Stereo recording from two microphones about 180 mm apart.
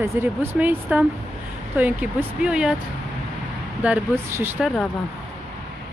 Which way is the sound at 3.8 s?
10° right (ahead or behind).